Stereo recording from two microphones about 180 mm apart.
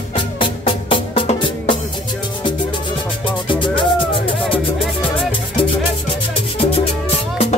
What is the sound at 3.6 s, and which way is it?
Music, 30° left (ahead or behind).